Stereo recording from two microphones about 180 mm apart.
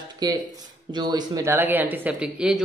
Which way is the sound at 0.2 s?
20° right (ahead or behind).